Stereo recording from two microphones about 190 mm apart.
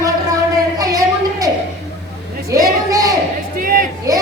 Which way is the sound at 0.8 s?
20° right (ahead or behind).